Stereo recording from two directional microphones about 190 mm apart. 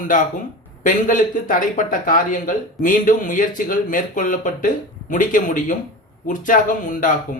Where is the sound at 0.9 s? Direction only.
45° left (ahead or behind).